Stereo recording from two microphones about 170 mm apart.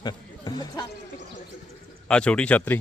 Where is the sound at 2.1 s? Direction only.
5° left (ahead or behind).